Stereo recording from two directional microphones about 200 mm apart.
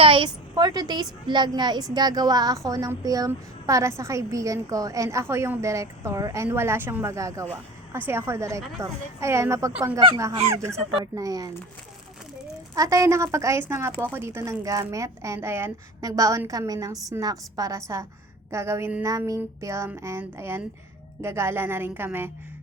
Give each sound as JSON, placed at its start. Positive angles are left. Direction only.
{"t": 0.0, "sound": "a sound", "side_deg": -25}
{"t": 0.5, "sound": "a woman's voice", "side_deg": -20}
{"t": 12.7, "sound": "a woman's voice", "side_deg": -15}